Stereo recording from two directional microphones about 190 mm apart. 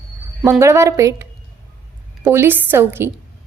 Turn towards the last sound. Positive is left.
turn(degrees=-10)  # may be behind; listen again after turning